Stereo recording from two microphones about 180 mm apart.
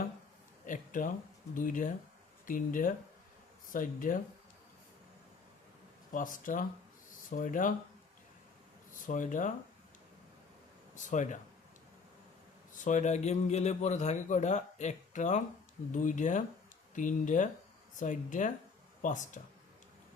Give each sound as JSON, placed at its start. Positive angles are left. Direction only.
{"t": 0.6, "sound": "a sound", "side_deg": 45}
{"t": 1.5, "sound": "speech", "side_deg": 50}
{"t": 6.1, "sound": "speech", "side_deg": 45}
{"t": 8.9, "sound": "speech", "side_deg": 45}
{"t": 10.9, "sound": "speech", "side_deg": 45}
{"t": 12.7, "sound": "a man's voice", "side_deg": 45}